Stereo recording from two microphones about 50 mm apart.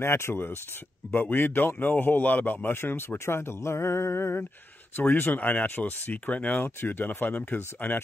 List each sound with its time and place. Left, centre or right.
0.0 s speech: left
1.1 s a man's voice: left
4.9 s speech: left
6.6 s speech: left